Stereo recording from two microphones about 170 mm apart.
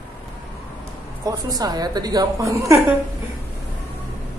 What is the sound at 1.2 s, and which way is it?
A woman's voice, 20° right (ahead or behind).